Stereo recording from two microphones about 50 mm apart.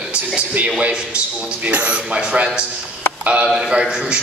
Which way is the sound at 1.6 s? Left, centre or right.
Right.